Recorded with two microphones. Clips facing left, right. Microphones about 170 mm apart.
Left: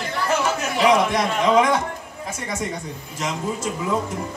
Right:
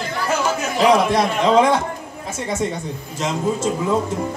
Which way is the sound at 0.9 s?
30° right (ahead or behind).